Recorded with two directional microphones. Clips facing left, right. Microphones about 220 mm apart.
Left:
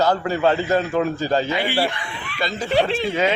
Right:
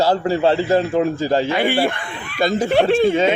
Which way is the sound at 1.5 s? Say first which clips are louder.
Right 4 dB; 50° right (ahead or behind).